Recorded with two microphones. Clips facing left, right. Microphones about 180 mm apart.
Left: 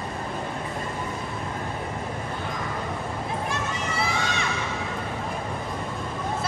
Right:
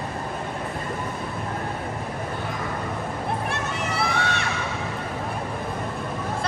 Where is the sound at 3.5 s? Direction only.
60° right (ahead or behind).